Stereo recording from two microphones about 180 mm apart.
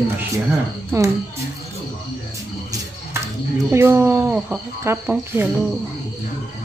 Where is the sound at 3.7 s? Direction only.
15° right (ahead or behind).